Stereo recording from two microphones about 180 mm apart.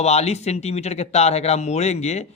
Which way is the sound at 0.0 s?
35° left (ahead or behind).